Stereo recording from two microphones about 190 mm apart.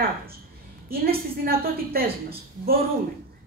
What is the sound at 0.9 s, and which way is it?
A woman's voice, 55° right (ahead or behind).